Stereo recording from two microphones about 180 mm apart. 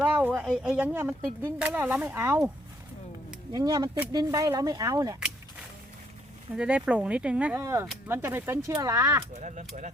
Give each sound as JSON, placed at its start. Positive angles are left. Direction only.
{"t": 0.0, "sound": "speech", "side_deg": -10}
{"t": 3.5, "sound": "speech", "side_deg": -20}
{"t": 6.6, "sound": "speech", "side_deg": -5}
{"t": 9.4, "sound": "speech", "side_deg": -45}